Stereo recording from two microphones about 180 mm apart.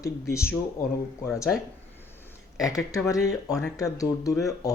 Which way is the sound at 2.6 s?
20° left (ahead or behind).